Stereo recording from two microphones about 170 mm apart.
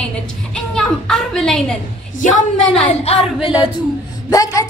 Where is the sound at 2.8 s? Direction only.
40° left (ahead or behind).